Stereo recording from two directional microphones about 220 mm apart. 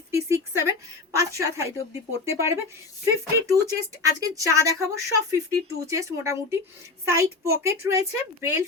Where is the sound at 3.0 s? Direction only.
15° right (ahead or behind).